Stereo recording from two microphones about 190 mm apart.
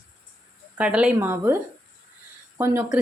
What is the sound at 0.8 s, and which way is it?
Speech, 5° right (ahead or behind).